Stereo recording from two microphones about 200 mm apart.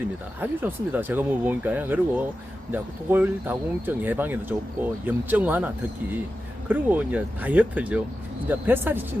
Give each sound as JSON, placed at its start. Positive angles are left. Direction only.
{"t": 0.3, "sound": "speech", "side_deg": -10}